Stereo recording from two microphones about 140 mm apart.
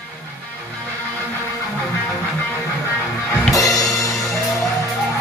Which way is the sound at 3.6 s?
25° left (ahead or behind).